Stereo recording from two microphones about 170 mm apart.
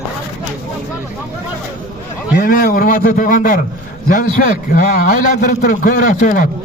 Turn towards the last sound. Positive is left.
turn(degrees=55)  # may be behind; listen again after turning